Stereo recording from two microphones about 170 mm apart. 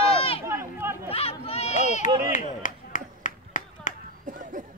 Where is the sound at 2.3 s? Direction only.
50° left (ahead or behind).